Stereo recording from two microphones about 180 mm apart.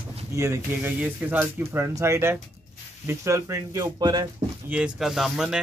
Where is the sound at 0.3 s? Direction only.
15° right (ahead or behind).